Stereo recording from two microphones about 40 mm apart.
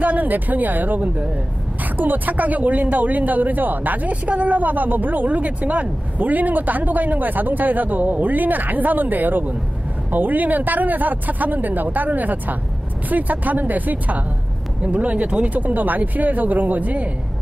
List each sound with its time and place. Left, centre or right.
0.0 s speech: right
2.0 s speech: right